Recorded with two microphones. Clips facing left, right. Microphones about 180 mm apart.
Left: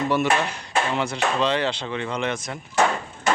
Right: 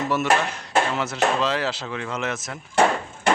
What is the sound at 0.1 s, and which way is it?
Speech, centre (ahead or behind).